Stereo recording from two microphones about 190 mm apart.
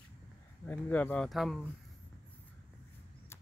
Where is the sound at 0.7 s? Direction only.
10° left (ahead or behind).